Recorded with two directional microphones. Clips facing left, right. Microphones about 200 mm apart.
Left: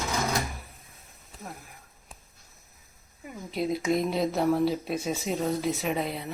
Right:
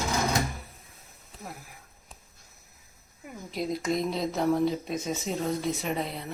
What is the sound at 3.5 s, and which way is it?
Speech, 5° left (ahead or behind).